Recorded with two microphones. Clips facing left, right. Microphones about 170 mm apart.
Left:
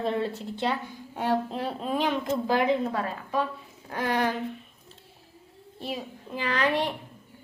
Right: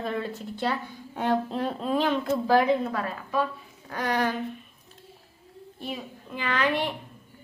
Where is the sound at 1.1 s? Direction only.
10° left (ahead or behind); by 4.3 s 30° left (ahead or behind).